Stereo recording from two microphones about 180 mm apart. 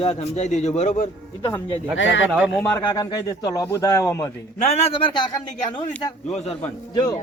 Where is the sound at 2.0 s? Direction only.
90° left.